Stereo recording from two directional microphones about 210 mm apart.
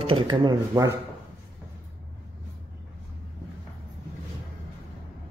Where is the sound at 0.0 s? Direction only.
25° right (ahead or behind).